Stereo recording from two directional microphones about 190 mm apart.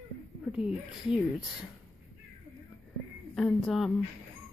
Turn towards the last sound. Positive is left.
turn(degrees=0)  # may be behind; listen again after turning